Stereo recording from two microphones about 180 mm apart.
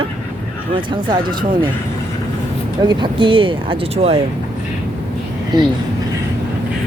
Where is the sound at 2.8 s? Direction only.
25° right (ahead or behind).